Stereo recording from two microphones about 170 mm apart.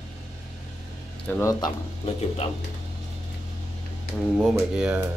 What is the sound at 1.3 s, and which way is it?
Speech, 20° left (ahead or behind).